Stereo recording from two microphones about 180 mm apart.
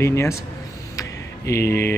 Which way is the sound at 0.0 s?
15° left (ahead or behind).